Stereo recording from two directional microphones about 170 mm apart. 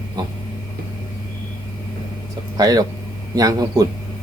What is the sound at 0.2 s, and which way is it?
Dog, 25° right (ahead or behind).